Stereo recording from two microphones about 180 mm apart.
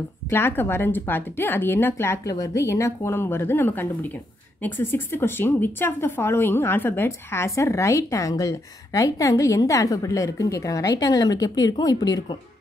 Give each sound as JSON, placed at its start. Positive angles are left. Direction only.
{"t": 0.3, "sound": "a woman's voice", "side_deg": 10}